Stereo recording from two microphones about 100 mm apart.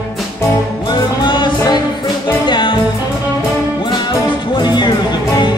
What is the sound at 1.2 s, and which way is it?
Music, 50° left (ahead or behind).